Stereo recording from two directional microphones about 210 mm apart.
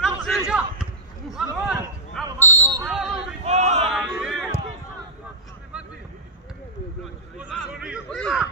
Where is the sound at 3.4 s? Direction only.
35° right (ahead or behind).